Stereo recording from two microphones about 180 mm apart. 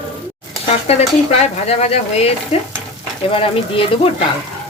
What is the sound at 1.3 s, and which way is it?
Speech, 35° left (ahead or behind).